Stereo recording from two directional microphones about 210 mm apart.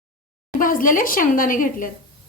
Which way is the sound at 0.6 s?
40° left (ahead or behind).